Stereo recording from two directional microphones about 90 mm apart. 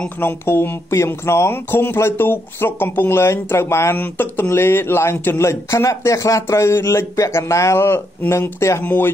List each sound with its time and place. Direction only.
0.2 s speech: 25° left (ahead or behind)